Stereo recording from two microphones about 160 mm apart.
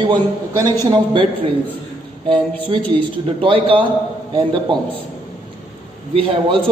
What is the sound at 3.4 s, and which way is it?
A man's voice, 35° right (ahead or behind).